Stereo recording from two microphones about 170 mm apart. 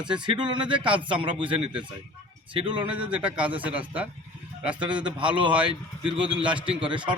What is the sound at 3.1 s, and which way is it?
A man's voice, 5° right (ahead or behind).